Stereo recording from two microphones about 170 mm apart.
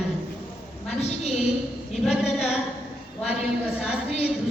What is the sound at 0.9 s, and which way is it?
Speech, 40° left (ahead or behind).